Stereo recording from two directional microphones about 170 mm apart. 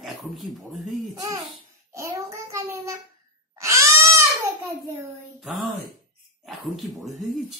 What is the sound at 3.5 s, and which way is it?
Babbling, 15° right (ahead or behind).